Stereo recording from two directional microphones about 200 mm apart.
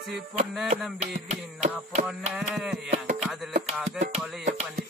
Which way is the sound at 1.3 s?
35° right (ahead or behind).